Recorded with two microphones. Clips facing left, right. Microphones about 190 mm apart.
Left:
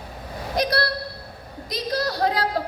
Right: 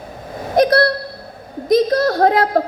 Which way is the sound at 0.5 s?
50° right (ahead or behind).